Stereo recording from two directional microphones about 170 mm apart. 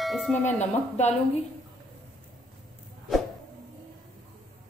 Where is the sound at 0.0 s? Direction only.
Centre (ahead or behind).